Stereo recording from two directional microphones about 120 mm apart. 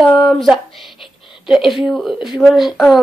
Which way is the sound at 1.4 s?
Centre (ahead or behind).